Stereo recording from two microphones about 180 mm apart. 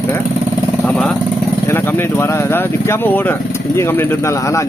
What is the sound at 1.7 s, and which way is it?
Speech, 10° left (ahead or behind).